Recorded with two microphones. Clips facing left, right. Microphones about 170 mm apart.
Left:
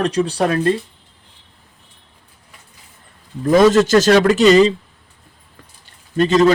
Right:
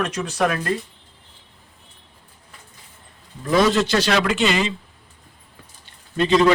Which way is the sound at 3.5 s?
45° left (ahead or behind).